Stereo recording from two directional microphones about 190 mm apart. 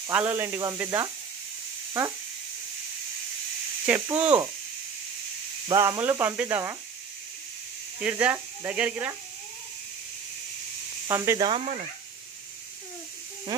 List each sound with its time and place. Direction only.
0.0 s speech: 10° right (ahead or behind)
3.8 s speech: 10° right (ahead or behind)
5.7 s speech: 15° right (ahead or behind)
8.0 s speech: 5° right (ahead or behind)
11.1 s speech: 15° right (ahead or behind)